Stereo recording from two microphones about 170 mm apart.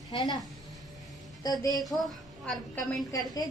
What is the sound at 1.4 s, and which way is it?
Speech, 20° left (ahead or behind).